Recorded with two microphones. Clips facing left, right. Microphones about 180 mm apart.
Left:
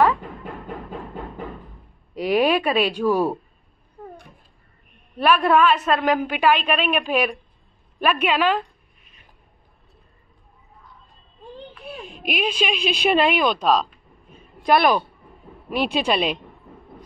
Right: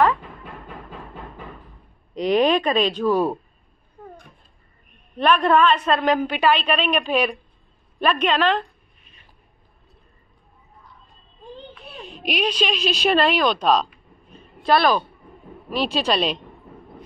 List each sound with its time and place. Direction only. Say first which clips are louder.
2.1 s a woman's voice: right 1 dB; 5° left (ahead or behind)
5.1 s a woman's voice: even; 10° left (ahead or behind)
11.7 s a sound: left 3 dB; 5° left (ahead or behind)
13.0 s a woman's voice: even; 10° left (ahead or behind)
14.3 s a sound: left 1 dB; 10° left (ahead or behind)
16.0 s a woman's voice: right 1 dB; 10° left (ahead or behind)